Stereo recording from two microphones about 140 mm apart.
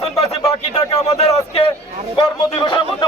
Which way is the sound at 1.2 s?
45° left (ahead or behind).